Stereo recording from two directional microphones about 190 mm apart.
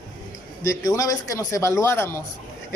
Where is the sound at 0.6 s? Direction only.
15° left (ahead or behind).